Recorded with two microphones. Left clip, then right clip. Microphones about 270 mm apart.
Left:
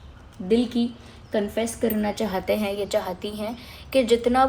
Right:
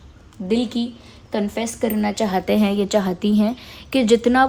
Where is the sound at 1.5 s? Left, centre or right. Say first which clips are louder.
Right 2 dB; right.